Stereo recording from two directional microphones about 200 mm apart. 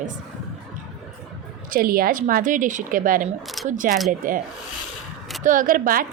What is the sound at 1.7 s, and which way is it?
A woman's voice, 45° right (ahead or behind).